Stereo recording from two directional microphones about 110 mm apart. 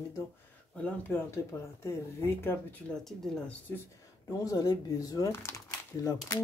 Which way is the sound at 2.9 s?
5° left (ahead or behind).